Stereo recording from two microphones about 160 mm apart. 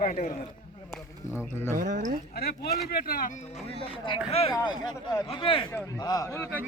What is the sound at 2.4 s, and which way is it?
Speech, 75° left (ahead or behind).